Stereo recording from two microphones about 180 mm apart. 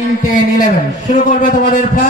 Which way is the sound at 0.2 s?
45° left (ahead or behind).